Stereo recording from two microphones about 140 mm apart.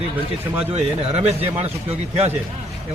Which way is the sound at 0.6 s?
50° right (ahead or behind).